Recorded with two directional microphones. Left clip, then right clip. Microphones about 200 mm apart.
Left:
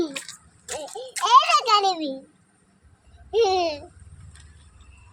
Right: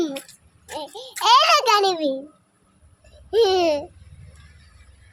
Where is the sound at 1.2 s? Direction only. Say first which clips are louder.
Right 2 dB; 55° right (ahead or behind); by 2.1 s 40° right (ahead or behind).